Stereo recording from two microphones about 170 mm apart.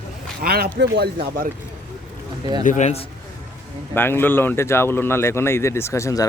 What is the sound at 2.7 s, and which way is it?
Speech, 45° left (ahead or behind).